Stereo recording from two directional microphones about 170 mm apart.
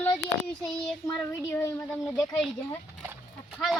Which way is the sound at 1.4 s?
15° left (ahead or behind).